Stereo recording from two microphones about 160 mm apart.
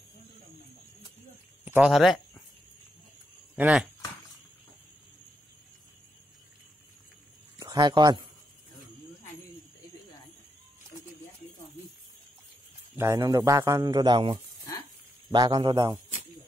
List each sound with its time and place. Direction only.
1.6 s a sound: 10° right (ahead or behind)
3.5 s speech: 10° right (ahead or behind)
7.5 s speech: 25° right (ahead or behind)
12.9 s a man's voice: 15° right (ahead or behind)